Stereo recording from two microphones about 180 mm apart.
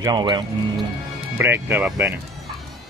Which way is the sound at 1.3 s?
10° right (ahead or behind).